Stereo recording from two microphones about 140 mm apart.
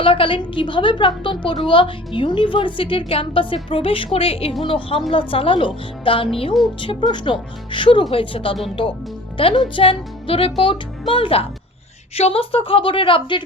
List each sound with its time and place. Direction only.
0.0 s a woman's voice: 40° left (ahead or behind)